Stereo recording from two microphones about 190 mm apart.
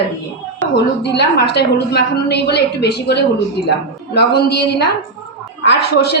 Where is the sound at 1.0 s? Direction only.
60° left (ahead or behind).